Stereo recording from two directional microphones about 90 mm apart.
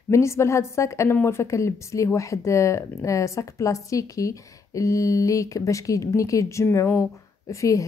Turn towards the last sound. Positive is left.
turn(degrees=35)  # may be behind; listen again after turning